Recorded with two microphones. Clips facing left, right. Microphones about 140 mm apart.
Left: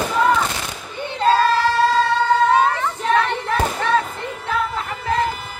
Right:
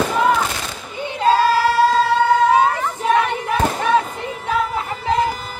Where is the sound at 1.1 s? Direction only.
10° right (ahead or behind).